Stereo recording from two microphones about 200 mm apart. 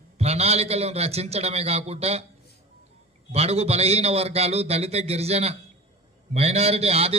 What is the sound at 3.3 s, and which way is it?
A man's voice, 30° right (ahead or behind).